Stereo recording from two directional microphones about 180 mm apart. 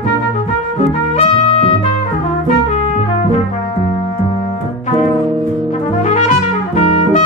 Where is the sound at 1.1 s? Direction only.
35° left (ahead or behind).